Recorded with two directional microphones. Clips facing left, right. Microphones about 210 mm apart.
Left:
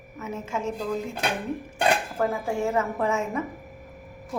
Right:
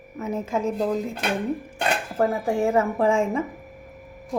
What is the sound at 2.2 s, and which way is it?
A woman's voice, 30° right (ahead or behind).